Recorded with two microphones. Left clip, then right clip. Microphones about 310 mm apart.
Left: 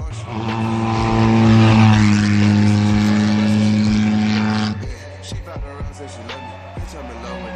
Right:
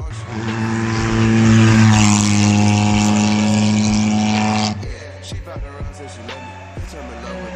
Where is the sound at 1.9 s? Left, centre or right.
Centre.